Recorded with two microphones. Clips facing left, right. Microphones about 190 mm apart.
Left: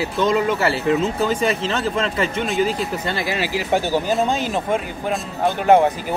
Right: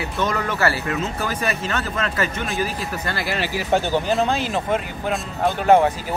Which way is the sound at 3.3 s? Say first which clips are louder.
Right 1 dB; 10° left (ahead or behind).